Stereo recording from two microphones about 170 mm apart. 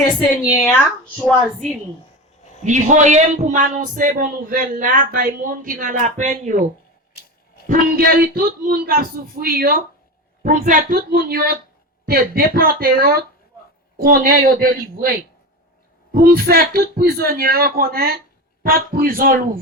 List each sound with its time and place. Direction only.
0.6 s speech: 10° left (ahead or behind)
2.6 s a man's voice: 45° right (ahead or behind)
7.7 s a man's voice: 60° right (ahead or behind)
10.4 s a man's voice: 50° right (ahead or behind)
16.1 s a man's voice: 60° right (ahead or behind)